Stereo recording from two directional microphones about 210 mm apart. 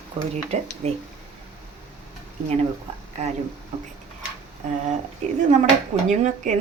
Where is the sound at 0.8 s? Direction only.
30° right (ahead or behind).